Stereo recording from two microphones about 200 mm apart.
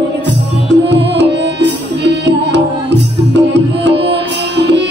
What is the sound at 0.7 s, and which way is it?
Music, 60° right (ahead or behind).